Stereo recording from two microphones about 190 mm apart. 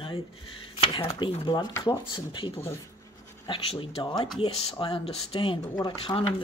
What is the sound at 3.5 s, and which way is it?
Speech, 25° left (ahead or behind).